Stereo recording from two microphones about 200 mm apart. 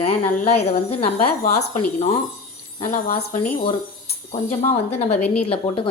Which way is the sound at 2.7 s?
30° left (ahead or behind).